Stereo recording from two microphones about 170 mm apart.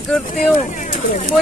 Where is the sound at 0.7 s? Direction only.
45° left (ahead or behind).